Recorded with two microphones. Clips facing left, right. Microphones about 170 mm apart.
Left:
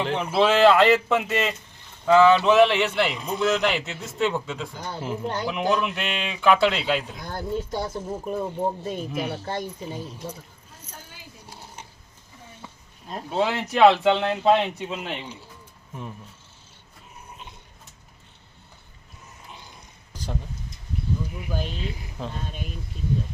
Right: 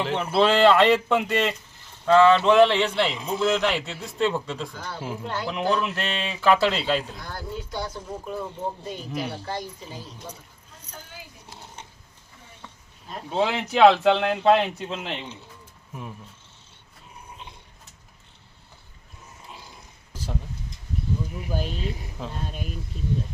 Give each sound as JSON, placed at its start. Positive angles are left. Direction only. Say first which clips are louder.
{"t": 0.0, "sound": "speech", "louder": "even", "side_deg": 0}
{"t": 4.7, "sound": "speech", "louder": "left 2 dB", "side_deg": 20}
{"t": 5.2, "sound": "speech", "louder": "left 3 dB", "side_deg": 40}
{"t": 5.5, "sound": "speech", "louder": "even", "side_deg": 0}
{"t": 7.3, "sound": "speech", "louder": "left 5 dB", "side_deg": 25}
{"t": 8.8, "sound": "speech", "louder": "left 3 dB", "side_deg": 5}
{"t": 13.3, "sound": "speech", "louder": "even", "side_deg": 5}
{"t": 21.5, "sound": "speech", "louder": "right 2 dB", "side_deg": -10}